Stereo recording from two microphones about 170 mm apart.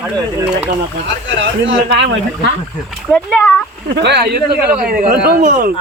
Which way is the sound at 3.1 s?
5° left (ahead or behind).